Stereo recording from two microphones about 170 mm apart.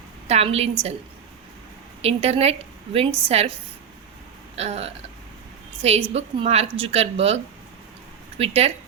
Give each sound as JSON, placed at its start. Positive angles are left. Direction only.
{"t": 0.3, "sound": "a woman's voice", "side_deg": -40}
{"t": 2.0, "sound": "a woman's voice", "side_deg": -35}
{"t": 4.5, "sound": "a woman's voice", "side_deg": -40}